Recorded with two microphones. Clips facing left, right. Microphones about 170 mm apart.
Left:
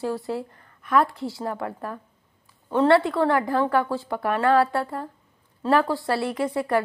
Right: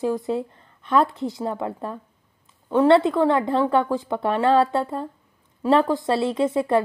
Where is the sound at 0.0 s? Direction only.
20° right (ahead or behind).